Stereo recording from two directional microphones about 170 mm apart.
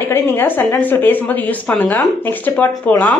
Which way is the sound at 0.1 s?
10° left (ahead or behind).